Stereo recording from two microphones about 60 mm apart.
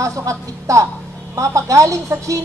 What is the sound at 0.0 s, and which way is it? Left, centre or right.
Speech, right.